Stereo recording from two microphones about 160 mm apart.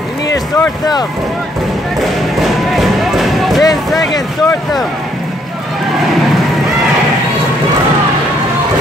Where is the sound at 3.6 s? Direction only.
25° left (ahead or behind).